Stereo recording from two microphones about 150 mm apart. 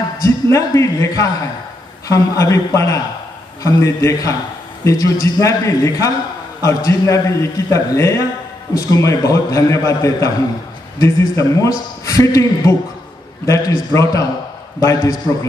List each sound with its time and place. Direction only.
0.2 s a man's voice: 20° left (ahead or behind)